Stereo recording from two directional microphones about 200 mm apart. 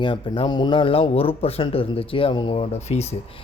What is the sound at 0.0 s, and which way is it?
Speech, 25° left (ahead or behind).